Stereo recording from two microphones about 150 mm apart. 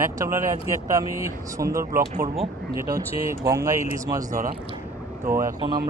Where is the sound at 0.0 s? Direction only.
20° right (ahead or behind).